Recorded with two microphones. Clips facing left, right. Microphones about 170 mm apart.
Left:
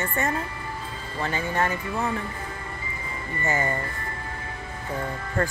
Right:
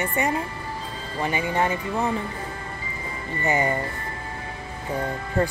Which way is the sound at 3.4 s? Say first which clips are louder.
Right 4 dB; 20° right (ahead or behind).